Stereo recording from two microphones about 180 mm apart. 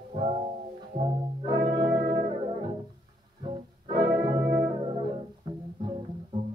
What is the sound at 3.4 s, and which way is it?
Music, 25° right (ahead or behind).